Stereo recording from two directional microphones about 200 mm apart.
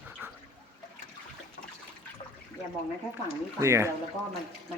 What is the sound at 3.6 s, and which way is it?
Speech, 15° right (ahead or behind).